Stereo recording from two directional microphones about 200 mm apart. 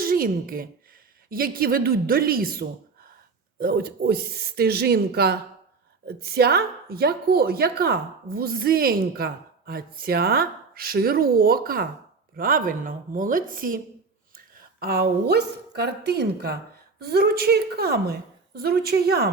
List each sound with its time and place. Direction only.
0.0 s a woman's voice: 45° right (ahead or behind)